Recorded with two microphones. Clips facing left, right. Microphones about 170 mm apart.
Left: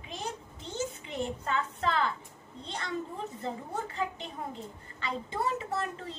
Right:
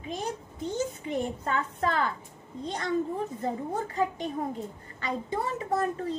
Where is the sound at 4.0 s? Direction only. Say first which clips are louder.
Right 7 dB; 40° right (ahead or behind).